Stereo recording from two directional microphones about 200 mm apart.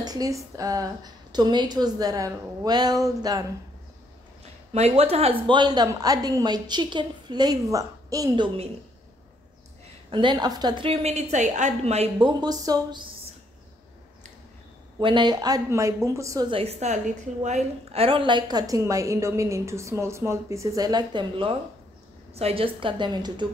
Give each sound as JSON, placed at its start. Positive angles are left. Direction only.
{"t": 0.0, "sound": "a woman's voice", "side_deg": -20}
{"t": 4.7, "sound": "a woman's voice", "side_deg": -30}
{"t": 10.1, "sound": "a woman's voice", "side_deg": -20}
{"t": 15.0, "sound": "a woman's voice", "side_deg": -25}